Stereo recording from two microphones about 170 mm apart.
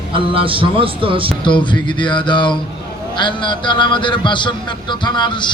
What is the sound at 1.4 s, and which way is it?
Speech, 30° left (ahead or behind).